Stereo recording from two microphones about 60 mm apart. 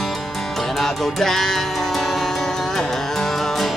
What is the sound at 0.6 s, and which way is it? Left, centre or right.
Music, centre.